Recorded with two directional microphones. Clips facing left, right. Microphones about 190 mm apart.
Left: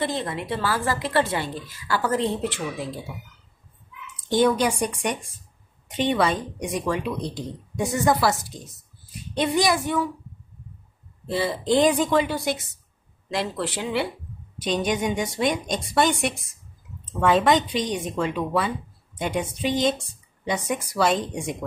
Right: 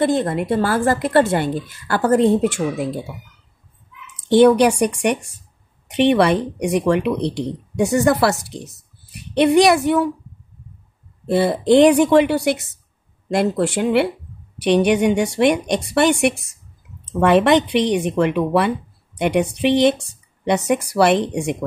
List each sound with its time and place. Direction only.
0.0 s a woman's voice: 50° right (ahead or behind)
4.3 s speech: 70° right (ahead or behind)
11.2 s speech: 55° right (ahead or behind)
13.3 s a woman's voice: 50° right (ahead or behind)
14.6 s speech: 70° right (ahead or behind)